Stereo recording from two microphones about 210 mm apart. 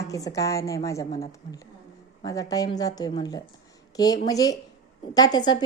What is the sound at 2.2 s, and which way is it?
A woman's voice, 15° left (ahead or behind).